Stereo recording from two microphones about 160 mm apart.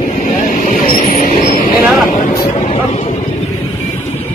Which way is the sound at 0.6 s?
55° left (ahead or behind).